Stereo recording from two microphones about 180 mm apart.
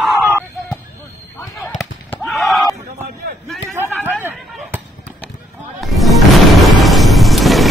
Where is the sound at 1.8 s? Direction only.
Centre (ahead or behind).